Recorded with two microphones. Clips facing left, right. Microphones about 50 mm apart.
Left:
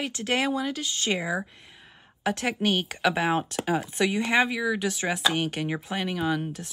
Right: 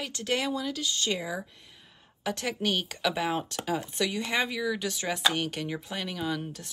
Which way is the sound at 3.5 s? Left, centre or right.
Left.